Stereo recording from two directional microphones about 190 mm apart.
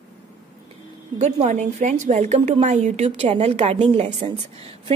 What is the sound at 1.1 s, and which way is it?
A woman's voice, 35° right (ahead or behind).